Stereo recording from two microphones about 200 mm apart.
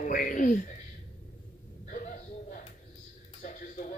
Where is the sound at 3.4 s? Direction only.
40° left (ahead or behind).